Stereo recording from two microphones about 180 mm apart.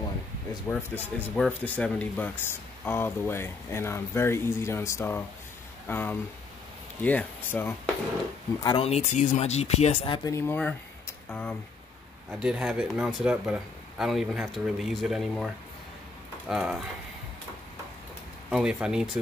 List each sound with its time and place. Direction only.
0.7 s speech: 10° left (ahead or behind)
8.6 s speech: 30° left (ahead or behind)
10.3 s speech: 10° left (ahead or behind)
12.3 s speech: 5° right (ahead or behind)
18.5 s speech: 5° right (ahead or behind)